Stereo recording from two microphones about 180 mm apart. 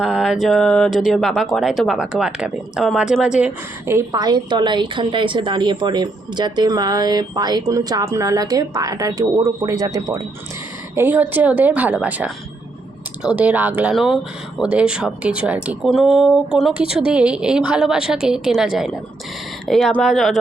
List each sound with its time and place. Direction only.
0.0 s a woman's voice: centre (ahead or behind)